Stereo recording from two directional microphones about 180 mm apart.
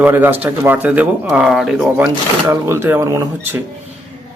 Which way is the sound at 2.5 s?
15° right (ahead or behind).